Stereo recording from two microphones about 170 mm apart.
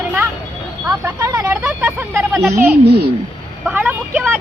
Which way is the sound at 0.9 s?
20° right (ahead or behind).